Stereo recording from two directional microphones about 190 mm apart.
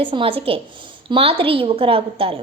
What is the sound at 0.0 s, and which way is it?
A woman's voice, 30° right (ahead or behind).